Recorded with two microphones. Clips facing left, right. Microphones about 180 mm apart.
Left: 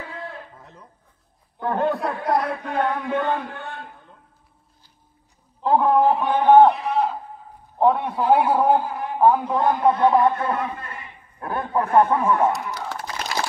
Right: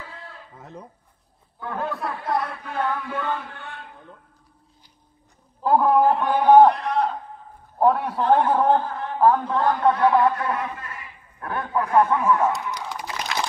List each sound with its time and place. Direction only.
0.0 s a sound: 60° left (ahead or behind)
1.6 s a man's voice: 40° left (ahead or behind)
5.6 s a man's voice: 5° right (ahead or behind)
8.1 s a man's voice: 10° left (ahead or behind)
9.6 s a man's voice: 20° left (ahead or behind)
12.7 s a sound: 15° right (ahead or behind)